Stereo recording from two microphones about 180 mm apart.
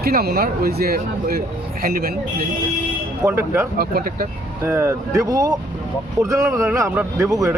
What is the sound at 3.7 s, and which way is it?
Speech, 55° right (ahead or behind).